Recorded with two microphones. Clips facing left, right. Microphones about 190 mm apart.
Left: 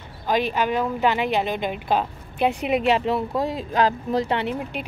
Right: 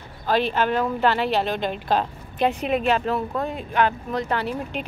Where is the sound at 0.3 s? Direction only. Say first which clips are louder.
Right 1 dB; 10° left (ahead or behind).